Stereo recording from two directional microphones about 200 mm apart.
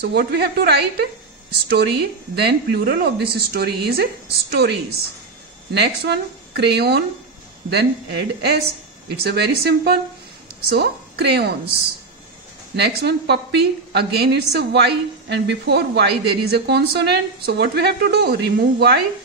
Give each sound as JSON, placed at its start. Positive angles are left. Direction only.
{"t": 0.0, "sound": "a woman's voice", "side_deg": -55}